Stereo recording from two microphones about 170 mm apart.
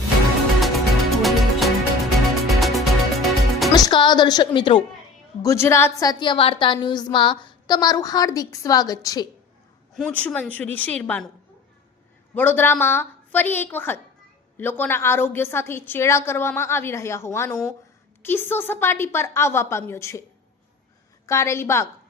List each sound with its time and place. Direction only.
0.6 s music: centre (ahead or behind)
3.8 s a woman's voice: 25° left (ahead or behind)
5.4 s a woman's voice: 15° left (ahead or behind)
9.9 s a woman's voice: 5° left (ahead or behind)
12.3 s a woman's voice: 10° left (ahead or behind)
21.2 s a woman's voice: 15° left (ahead or behind)